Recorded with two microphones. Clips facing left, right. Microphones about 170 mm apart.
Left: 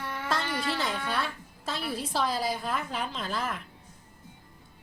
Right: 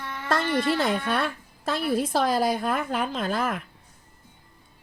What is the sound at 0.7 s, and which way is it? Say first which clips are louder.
A woman's voice: right 6 dB; 55° right (ahead or behind).